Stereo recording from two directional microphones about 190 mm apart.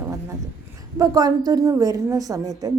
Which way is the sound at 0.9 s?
20° right (ahead or behind).